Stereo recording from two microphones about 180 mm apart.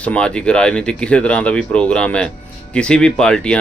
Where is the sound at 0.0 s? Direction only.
5° left (ahead or behind).